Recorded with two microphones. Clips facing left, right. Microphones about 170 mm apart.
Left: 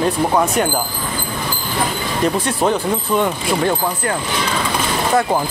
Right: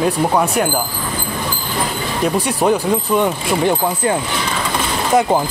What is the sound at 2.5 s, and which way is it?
Speech, 10° right (ahead or behind).